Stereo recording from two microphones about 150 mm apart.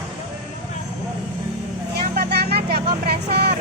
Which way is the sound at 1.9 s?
90° right.